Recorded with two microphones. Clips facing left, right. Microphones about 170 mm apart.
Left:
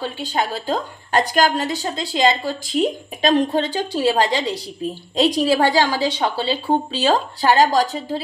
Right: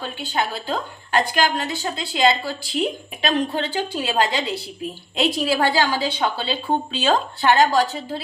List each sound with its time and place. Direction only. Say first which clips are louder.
0.0 s a woman's voice: left 2 dB; 35° left (ahead or behind)